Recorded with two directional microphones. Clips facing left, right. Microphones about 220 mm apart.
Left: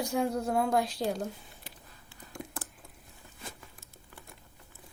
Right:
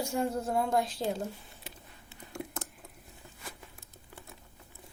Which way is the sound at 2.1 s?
20° right (ahead or behind).